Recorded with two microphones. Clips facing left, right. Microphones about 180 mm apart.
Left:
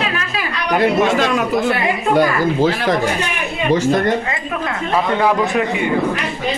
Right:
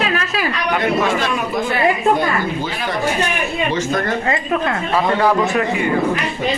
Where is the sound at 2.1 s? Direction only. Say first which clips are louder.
Left 5 dB; 90° left.